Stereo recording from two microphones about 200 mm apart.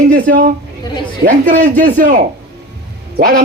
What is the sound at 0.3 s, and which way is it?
Speech, 40° right (ahead or behind).